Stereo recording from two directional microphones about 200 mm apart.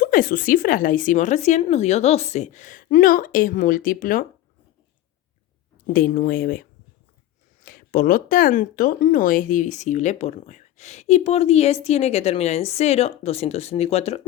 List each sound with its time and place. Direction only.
0.0 s speech: 45° left (ahead or behind)
5.9 s speech: 45° left (ahead or behind)